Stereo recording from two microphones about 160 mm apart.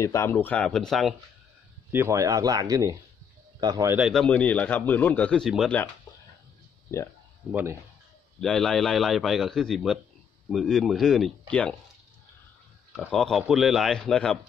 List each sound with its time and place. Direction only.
0.0 s speech: 20° left (ahead or behind); by 1.1 s centre (ahead or behind)
1.9 s speech: 15° right (ahead or behind)
3.9 s speech: centre (ahead or behind)
6.9 s speech: 20° left (ahead or behind)
8.4 s a man's voice: 5° left (ahead or behind)
12.9 s a man's voice: centre (ahead or behind)